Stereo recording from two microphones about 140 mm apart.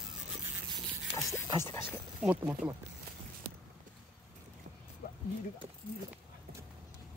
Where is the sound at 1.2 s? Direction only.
20° left (ahead or behind).